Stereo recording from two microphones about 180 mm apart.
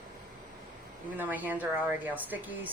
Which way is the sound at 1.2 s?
10° right (ahead or behind).